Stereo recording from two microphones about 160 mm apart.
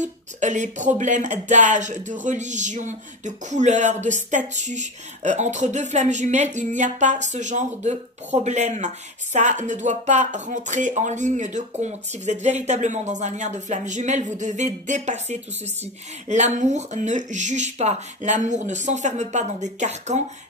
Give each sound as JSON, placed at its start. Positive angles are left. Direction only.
{"t": 0.0, "sound": "a woman's voice", "side_deg": -50}